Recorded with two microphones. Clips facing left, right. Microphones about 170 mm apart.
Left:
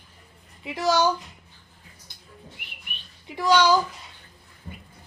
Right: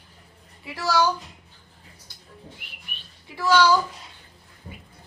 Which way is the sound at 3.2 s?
20° left (ahead or behind).